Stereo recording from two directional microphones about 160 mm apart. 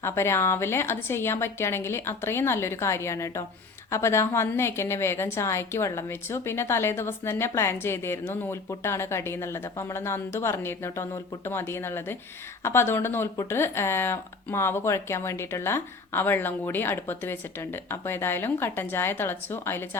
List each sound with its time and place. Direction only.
0.0 s a woman's voice: 15° left (ahead or behind)